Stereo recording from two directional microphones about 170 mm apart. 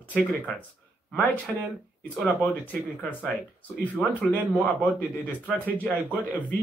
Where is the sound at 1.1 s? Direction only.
10° left (ahead or behind).